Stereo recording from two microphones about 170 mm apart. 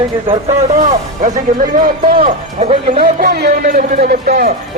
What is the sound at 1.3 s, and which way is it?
Speech, 55° right (ahead or behind).